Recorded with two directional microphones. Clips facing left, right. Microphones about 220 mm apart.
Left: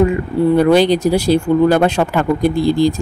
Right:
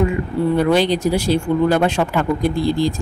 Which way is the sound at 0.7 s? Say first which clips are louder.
Left 4 dB; 40° left (ahead or behind).